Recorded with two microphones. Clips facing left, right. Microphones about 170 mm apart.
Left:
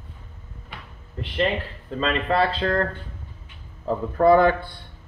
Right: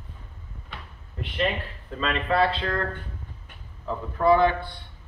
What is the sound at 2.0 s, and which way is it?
Speech, 35° left (ahead or behind).